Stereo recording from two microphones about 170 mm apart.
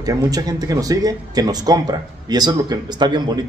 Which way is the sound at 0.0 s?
20° right (ahead or behind).